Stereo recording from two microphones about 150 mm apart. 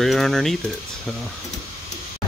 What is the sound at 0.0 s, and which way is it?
Speech, centre (ahead or behind).